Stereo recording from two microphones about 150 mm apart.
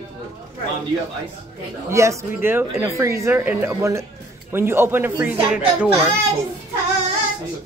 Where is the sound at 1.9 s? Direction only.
20° right (ahead or behind).